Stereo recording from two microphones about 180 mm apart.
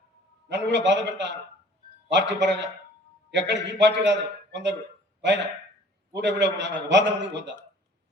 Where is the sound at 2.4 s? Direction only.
80° right.